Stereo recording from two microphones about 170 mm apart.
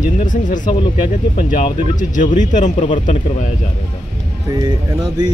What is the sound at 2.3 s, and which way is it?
Speech, 50° left (ahead or behind).